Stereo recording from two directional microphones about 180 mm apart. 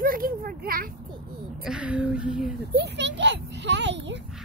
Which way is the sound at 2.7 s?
70° right (ahead or behind).